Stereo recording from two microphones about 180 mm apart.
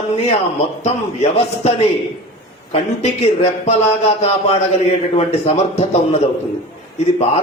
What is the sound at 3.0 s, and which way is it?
Speech, 35° left (ahead or behind).